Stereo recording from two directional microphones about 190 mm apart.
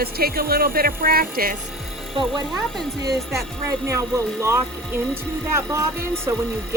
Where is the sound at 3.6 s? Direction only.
15° right (ahead or behind).